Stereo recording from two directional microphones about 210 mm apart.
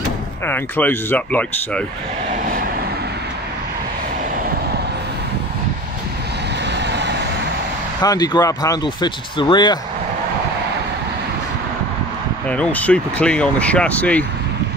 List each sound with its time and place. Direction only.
0.5 s speech: 10° left (ahead or behind)
2.3 s vehicle: 40° right (ahead or behind)
6.6 s vehicle: 55° right (ahead or behind)
8.0 s speech: 20° left (ahead or behind)
12.4 s speech: 5° left (ahead or behind)